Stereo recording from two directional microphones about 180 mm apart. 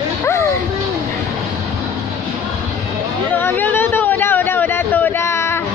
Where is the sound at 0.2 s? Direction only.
15° left (ahead or behind).